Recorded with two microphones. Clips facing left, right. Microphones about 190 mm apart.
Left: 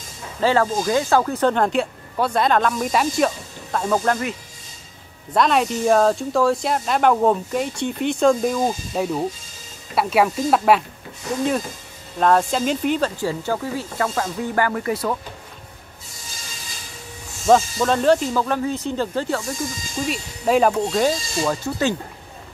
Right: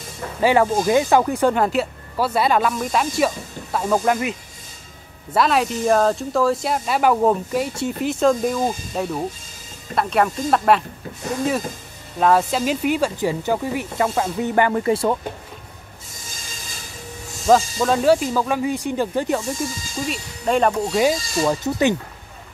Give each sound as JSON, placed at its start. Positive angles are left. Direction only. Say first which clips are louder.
{"t": 0.4, "sound": "speech", "louder": "right 2 dB", "side_deg": -15}
{"t": 5.3, "sound": "speech", "louder": "even", "side_deg": 0}
{"t": 12.2, "sound": "speech", "louder": "even", "side_deg": -5}
{"t": 17.5, "sound": "speech", "louder": "even", "side_deg": -5}
{"t": 20.1, "sound": "speech", "louder": "left 2 dB", "side_deg": 5}